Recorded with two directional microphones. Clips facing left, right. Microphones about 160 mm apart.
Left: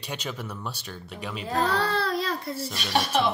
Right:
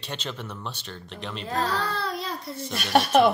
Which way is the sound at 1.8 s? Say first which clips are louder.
Left 3 dB; 75° left (ahead or behind).